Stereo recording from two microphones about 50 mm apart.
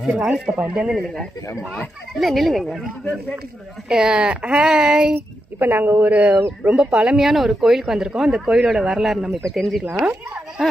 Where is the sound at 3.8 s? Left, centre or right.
Centre.